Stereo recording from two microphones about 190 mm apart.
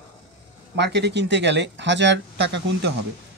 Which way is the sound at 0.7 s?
60° right (ahead or behind).